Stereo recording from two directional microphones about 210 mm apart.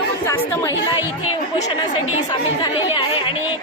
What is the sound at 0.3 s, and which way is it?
Speech, 15° left (ahead or behind).